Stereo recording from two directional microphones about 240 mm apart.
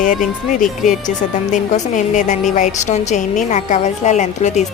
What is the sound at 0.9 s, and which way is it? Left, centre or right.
Speech, left.